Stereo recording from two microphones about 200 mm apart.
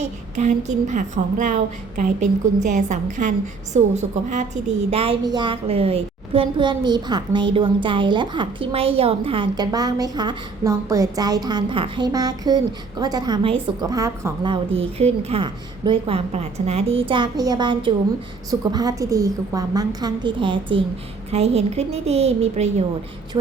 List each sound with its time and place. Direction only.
0.0 s a woman's voice: 35° right (ahead or behind)